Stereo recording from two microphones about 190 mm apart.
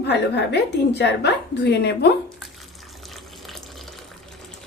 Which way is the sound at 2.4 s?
Centre (ahead or behind).